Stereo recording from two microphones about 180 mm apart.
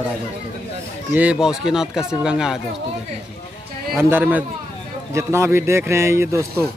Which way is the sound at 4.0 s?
10° right (ahead or behind).